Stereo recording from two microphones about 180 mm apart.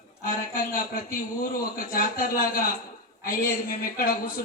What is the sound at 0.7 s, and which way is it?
A man's voice, 50° left (ahead or behind).